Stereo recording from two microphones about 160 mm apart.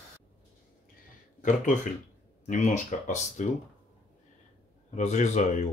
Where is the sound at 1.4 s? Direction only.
50° left (ahead or behind).